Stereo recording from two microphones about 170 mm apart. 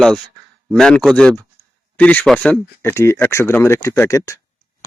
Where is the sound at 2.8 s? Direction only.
15° left (ahead or behind).